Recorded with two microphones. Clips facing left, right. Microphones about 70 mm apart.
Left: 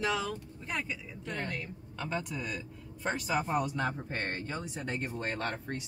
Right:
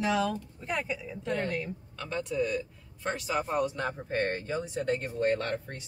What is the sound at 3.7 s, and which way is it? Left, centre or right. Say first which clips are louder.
Speech: right 3 dB; centre.